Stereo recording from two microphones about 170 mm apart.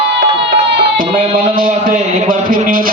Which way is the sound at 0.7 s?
55° right (ahead or behind).